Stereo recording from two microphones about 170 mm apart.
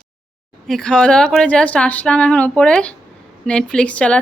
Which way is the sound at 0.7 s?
5° left (ahead or behind).